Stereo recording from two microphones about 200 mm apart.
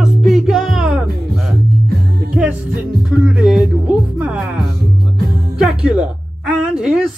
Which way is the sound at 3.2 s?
5° right (ahead or behind).